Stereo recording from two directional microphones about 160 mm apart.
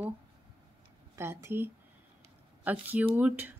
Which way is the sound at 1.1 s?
15° right (ahead or behind).